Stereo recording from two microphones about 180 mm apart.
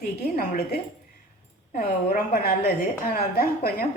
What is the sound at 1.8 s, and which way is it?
A woman's voice, 55° left (ahead or behind).